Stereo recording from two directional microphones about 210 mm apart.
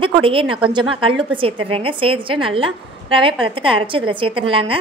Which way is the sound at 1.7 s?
25° right (ahead or behind).